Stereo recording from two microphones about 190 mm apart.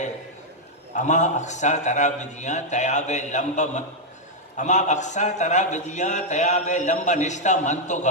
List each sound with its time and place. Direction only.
0.9 s speech: 40° left (ahead or behind)